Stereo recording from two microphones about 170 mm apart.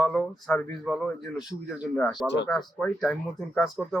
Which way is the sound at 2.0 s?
Centre (ahead or behind).